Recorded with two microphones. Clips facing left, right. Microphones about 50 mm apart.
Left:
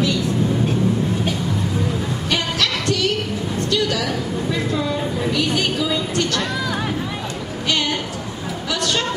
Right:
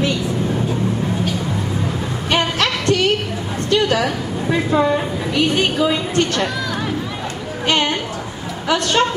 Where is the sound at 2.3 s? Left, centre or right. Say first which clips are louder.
Right 4 dB; right.